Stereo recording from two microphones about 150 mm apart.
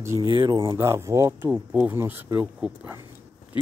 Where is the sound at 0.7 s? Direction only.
20° right (ahead or behind).